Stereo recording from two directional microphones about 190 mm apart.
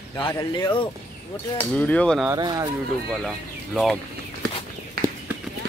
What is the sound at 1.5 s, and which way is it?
Speech, 5° left (ahead or behind).